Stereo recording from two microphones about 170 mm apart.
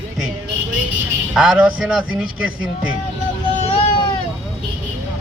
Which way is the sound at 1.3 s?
5° right (ahead or behind).